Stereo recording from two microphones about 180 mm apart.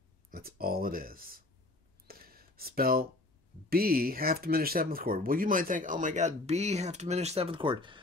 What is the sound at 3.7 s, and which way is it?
Speech, 55° right (ahead or behind).